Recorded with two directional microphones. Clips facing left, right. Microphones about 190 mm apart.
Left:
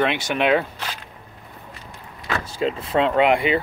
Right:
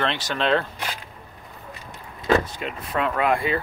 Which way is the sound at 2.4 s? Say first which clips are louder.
Left 8 dB; 30° left (ahead or behind).